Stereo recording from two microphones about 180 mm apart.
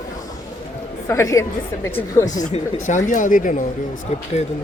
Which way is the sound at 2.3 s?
45° left (ahead or behind).